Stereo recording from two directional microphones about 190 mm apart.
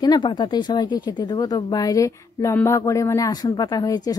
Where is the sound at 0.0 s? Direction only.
25° left (ahead or behind).